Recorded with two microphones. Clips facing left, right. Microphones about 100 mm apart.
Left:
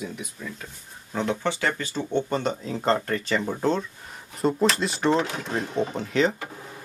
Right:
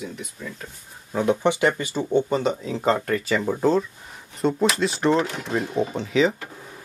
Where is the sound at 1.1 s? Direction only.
15° right (ahead or behind).